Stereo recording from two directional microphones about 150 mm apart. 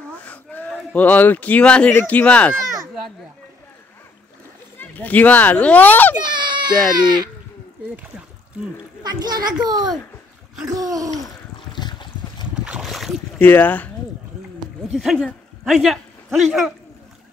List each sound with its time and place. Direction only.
0.2 s speech: 10° left (ahead or behind)
4.7 s speech: 10° left (ahead or behind)
6.2 s a child's voice: 30° right (ahead or behind)
9.0 s a child's voice: 25° right (ahead or behind)
11.2 s a sound: 30° left (ahead or behind)
12.5 s boat: 5° right (ahead or behind)
13.4 s speech: 10° left (ahead or behind)
14.9 s a man's voice: centre (ahead or behind)